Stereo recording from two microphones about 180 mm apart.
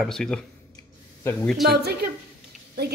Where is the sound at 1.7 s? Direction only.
60° right (ahead or behind).